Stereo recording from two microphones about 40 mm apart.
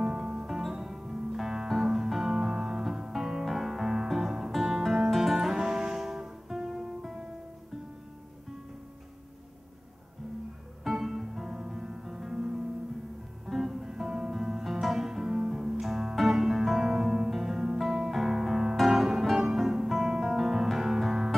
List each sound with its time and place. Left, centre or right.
0.0 s music: right
0.5 s music: centre
10.8 s music: centre